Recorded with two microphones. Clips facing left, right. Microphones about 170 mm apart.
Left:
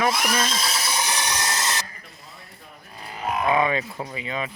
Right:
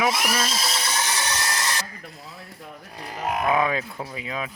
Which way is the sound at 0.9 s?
15° left (ahead or behind).